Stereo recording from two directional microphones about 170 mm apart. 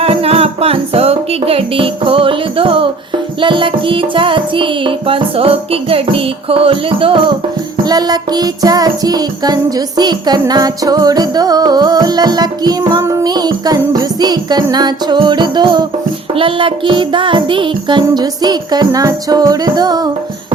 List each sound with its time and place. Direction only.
0.0 s music: 35° right (ahead or behind)